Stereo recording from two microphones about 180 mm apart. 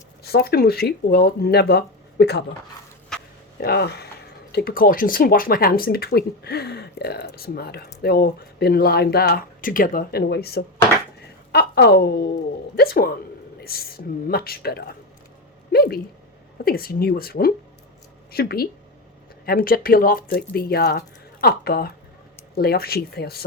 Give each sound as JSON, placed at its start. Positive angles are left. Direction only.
{"t": 0.2, "sound": "speech", "side_deg": 60}
{"t": 3.6, "sound": "speech", "side_deg": 65}